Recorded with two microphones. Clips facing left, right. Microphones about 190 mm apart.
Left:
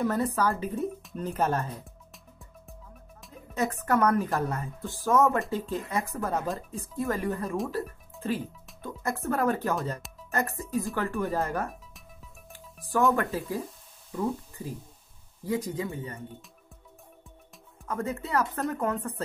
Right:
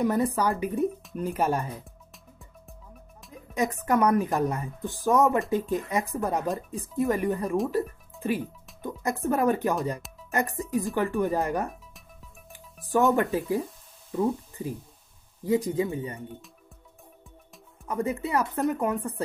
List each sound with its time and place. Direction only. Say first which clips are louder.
0.0 s speech: right 2 dB; 15° right (ahead or behind)
3.5 s speech: right 2 dB; 15° right (ahead or behind)
13.1 s speech: right 4 dB; 20° right (ahead or behind)
17.8 s speech: right 4 dB; 15° right (ahead or behind)